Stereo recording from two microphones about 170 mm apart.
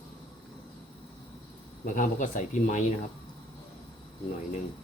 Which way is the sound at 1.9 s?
50° left (ahead or behind).